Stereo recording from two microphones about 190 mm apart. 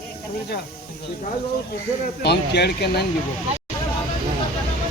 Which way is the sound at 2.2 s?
60° left (ahead or behind).